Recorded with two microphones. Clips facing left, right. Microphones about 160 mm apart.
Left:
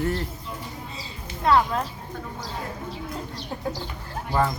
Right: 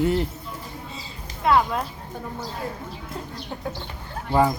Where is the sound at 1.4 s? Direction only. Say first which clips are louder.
Even; 5° right (ahead or behind).